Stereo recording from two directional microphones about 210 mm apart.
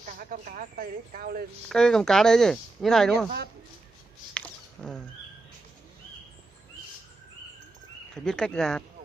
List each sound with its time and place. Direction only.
0.0 s speech: 40° right (ahead or behind)
1.7 s speech: 5° left (ahead or behind)
4.3 s a sound: 5° left (ahead or behind)
8.2 s speech: 5° left (ahead or behind)